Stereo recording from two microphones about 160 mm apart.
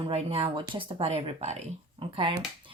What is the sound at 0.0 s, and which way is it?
Speech, 40° right (ahead or behind).